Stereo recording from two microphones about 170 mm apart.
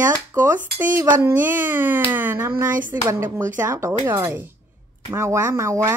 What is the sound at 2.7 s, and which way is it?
Speech, 50° right (ahead or behind).